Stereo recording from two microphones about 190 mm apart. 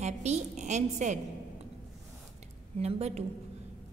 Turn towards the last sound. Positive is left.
turn(degrees=-35)  # may be behind; listen again after turning